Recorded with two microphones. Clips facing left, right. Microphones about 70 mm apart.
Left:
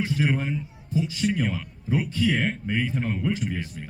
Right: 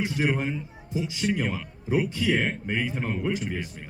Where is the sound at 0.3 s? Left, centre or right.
Centre.